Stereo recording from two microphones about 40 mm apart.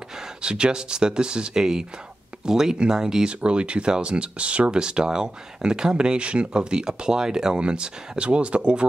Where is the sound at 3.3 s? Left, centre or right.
Right.